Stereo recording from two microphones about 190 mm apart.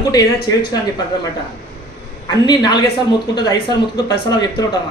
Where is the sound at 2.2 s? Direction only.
20° left (ahead or behind).